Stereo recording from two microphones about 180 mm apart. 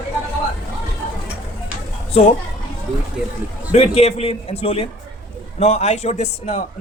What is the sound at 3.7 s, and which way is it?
A man's voice, 35° left (ahead or behind).